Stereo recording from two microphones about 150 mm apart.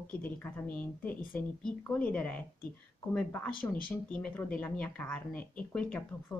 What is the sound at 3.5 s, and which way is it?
Speech, 70° left (ahead or behind).